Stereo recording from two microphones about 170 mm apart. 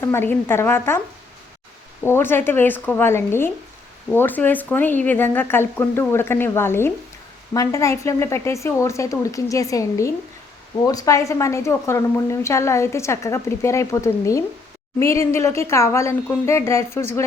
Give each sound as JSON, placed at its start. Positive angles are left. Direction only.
{"t": 0.0, "sound": "a woman's voice", "side_deg": 15}
{"t": 2.0, "sound": "a woman's voice", "side_deg": 15}